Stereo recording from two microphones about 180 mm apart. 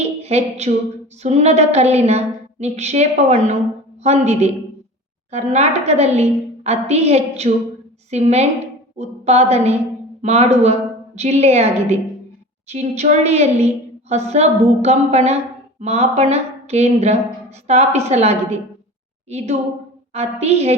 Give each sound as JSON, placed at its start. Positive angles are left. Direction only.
{"t": 0.0, "sound": "a sound", "side_deg": -35}
{"t": 1.2, "sound": "a woman's voice", "side_deg": -35}
{"t": 20.1, "sound": "a woman's voice", "side_deg": -35}